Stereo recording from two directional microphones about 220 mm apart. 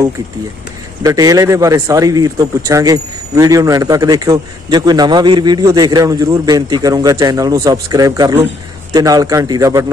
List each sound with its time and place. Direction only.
1.0 s speech: 15° right (ahead or behind)